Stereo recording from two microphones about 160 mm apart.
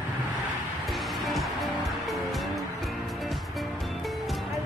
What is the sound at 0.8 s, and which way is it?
Music, centre (ahead or behind).